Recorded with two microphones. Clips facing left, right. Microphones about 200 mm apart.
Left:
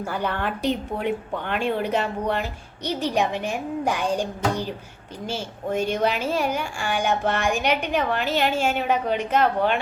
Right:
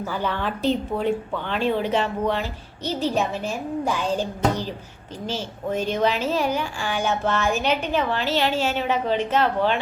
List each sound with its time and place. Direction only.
0.2 s a woman's voice: 15° left (ahead or behind)
1.9 s speech: 45° left (ahead or behind)
2.8 s a woman's voice: 15° left (ahead or behind)